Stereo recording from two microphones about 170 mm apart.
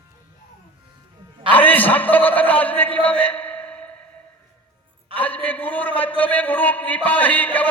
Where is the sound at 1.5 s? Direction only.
10° left (ahead or behind).